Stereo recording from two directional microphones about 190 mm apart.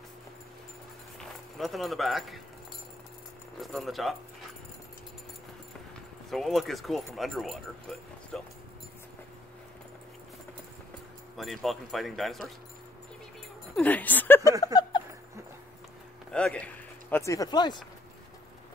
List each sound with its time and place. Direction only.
1.6 s speech: centre (ahead or behind)
3.6 s speech: centre (ahead or behind)
6.3 s speech: centre (ahead or behind)
11.3 s speech: centre (ahead or behind)
13.7 s speech: 10° left (ahead or behind)
14.6 s a sound: 20° left (ahead or behind)
16.3 s speech: 5° left (ahead or behind); by 17.7 s 20° left (ahead or behind)